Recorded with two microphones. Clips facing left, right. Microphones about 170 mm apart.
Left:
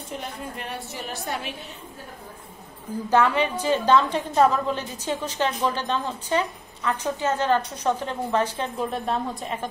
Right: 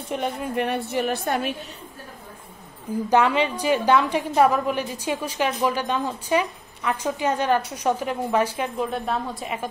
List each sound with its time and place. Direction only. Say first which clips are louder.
0.1 s a woman's voice: right 9 dB; 65° right (ahead or behind)
3.1 s a woman's voice: right 1 dB; 15° right (ahead or behind)